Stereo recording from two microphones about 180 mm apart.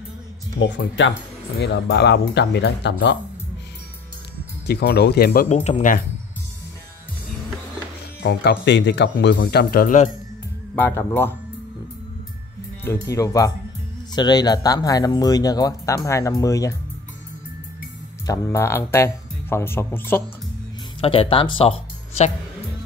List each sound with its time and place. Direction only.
0.6 s speech: 90° left
1.6 s speech: 70° left (ahead or behind)
4.6 s speech: 65° left (ahead or behind)
5.5 s speech: 40° left (ahead or behind)
8.2 s speech: 65° left (ahead or behind); by 10.0 s 50° left (ahead or behind)
10.8 s speech: 15° left (ahead or behind)
12.8 s speech: 15° left (ahead or behind)
18.2 s speech: 20° left (ahead or behind)
21.0 s speech: 30° left (ahead or behind)